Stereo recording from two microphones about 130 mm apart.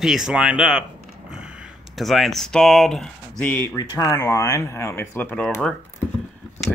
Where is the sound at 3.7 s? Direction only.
30° left (ahead or behind).